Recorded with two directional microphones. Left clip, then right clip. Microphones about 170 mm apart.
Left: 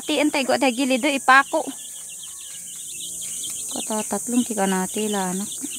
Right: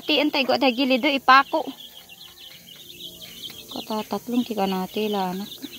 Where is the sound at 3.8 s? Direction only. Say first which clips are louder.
Left 1 dB; 30° left (ahead or behind).